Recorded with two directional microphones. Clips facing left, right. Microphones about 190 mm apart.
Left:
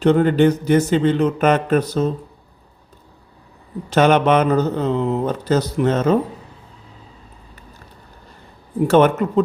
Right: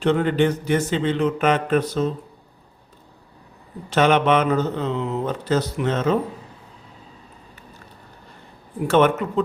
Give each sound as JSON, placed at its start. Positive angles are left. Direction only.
{"t": 0.0, "sound": "speech", "side_deg": 40}
{"t": 3.8, "sound": "speech", "side_deg": 40}
{"t": 8.9, "sound": "speech", "side_deg": 40}